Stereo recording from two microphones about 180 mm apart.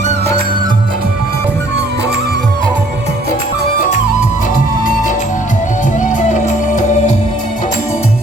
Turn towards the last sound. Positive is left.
turn(degrees=40)  # may be behind; listen again after turning